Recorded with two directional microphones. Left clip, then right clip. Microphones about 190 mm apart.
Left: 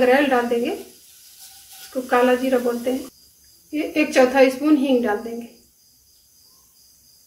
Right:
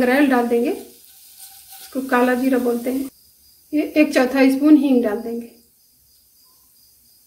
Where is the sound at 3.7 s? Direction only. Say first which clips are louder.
Right 4 dB; 55° right (ahead or behind).